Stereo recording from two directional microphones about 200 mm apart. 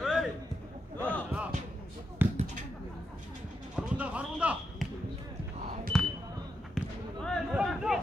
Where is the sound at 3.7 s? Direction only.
5° right (ahead or behind).